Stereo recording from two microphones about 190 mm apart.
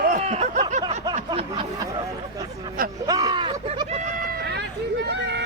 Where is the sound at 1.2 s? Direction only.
25° right (ahead or behind).